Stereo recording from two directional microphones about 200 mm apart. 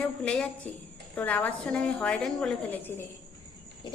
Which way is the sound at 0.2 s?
5° left (ahead or behind).